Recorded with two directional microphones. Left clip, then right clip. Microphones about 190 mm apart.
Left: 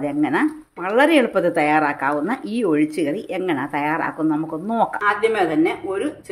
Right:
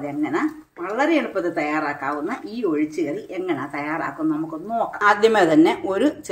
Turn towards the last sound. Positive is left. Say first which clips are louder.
# right 3 dB
turn(degrees=-30)  # may be behind; listen again after turning